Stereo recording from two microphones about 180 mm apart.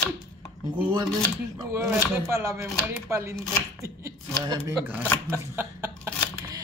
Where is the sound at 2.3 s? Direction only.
15° right (ahead or behind).